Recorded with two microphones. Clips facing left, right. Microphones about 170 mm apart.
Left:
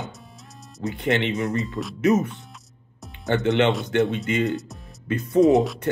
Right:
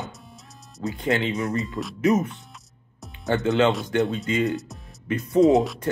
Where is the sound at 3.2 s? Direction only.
20° left (ahead or behind).